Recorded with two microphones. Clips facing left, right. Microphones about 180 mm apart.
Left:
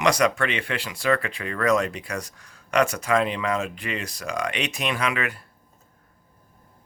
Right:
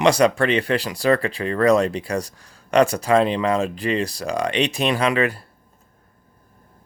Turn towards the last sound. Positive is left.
turn(degrees=-35)  # may be behind; listen again after turning